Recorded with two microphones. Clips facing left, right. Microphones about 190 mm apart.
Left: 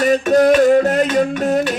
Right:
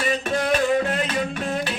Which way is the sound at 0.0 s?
40° left (ahead or behind).